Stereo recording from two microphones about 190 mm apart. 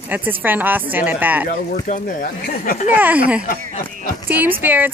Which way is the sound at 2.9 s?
10° right (ahead or behind).